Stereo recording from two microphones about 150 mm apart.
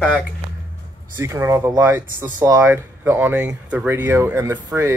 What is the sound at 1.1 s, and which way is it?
Speech, 20° right (ahead or behind).